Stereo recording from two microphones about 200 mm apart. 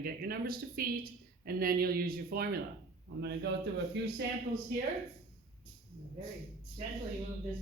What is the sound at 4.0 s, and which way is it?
Speech, 65° right (ahead or behind).